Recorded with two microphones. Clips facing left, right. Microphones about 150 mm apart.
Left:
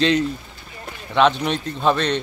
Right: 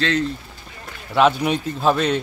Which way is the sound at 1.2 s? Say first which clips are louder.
Right 1 dB; 10° right (ahead or behind).